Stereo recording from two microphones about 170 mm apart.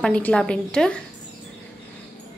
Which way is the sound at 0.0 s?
5° left (ahead or behind).